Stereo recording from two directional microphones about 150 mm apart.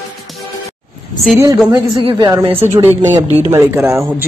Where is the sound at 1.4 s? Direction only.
25° right (ahead or behind).